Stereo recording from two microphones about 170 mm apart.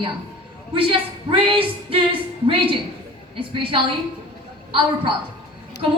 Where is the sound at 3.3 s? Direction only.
30° right (ahead or behind).